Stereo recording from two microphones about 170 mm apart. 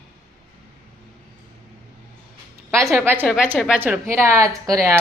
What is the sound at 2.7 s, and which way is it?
Speech, 20° right (ahead or behind).